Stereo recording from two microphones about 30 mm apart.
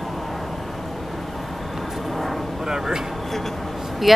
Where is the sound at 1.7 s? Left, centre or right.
Centre.